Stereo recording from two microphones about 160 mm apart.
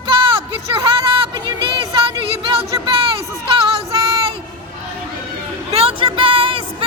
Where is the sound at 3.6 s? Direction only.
35° right (ahead or behind).